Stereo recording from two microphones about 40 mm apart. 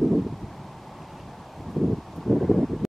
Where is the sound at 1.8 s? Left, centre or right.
Centre.